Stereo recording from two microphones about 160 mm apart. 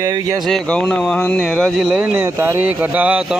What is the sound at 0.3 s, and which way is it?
Speech, centre (ahead or behind).